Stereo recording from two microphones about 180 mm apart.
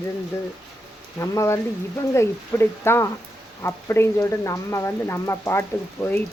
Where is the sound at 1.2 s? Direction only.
15° left (ahead or behind).